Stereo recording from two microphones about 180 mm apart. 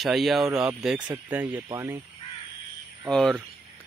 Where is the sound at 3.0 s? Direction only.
Centre (ahead or behind).